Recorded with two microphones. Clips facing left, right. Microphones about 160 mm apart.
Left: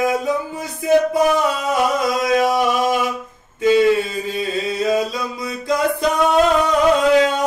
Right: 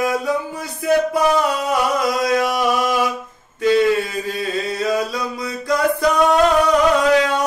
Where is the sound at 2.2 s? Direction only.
20° left (ahead or behind).